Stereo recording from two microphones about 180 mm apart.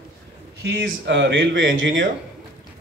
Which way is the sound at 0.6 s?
85° right.